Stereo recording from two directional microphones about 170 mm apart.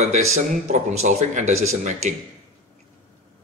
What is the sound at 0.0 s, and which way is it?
Speech, 45° right (ahead or behind).